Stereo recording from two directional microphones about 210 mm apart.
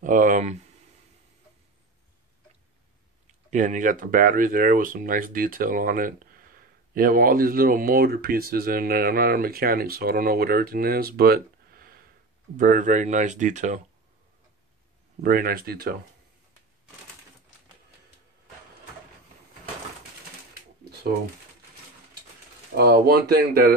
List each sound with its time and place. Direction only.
0.0 s speech: 40° right (ahead or behind)
3.3 s speech: 35° right (ahead or behind)
15.2 s speech: 45° right (ahead or behind)
22.8 s speech: 50° right (ahead or behind)